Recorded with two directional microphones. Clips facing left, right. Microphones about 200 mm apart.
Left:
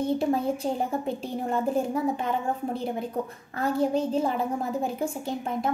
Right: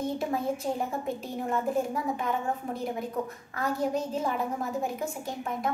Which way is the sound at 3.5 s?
30° left (ahead or behind).